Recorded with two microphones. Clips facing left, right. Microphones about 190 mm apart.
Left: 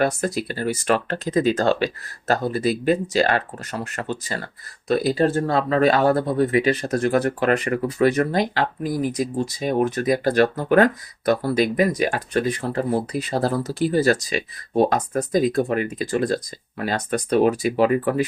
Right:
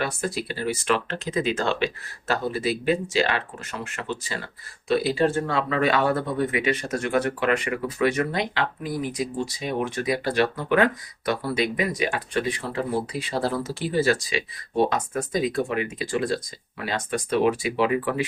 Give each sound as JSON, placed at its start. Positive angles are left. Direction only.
{"t": 0.3, "sound": "speech", "side_deg": 45}